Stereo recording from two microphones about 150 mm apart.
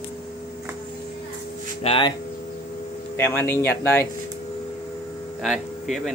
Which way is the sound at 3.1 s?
15° left (ahead or behind).